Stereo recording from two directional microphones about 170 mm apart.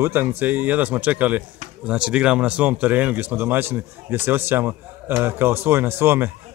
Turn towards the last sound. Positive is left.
turn(degrees=-15)  # may be behind; listen again after turning